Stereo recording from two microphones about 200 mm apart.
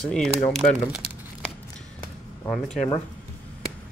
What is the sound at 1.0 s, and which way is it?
Crumpling, 55° right (ahead or behind).